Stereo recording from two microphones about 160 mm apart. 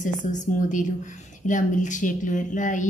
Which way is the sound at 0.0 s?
50° left (ahead or behind).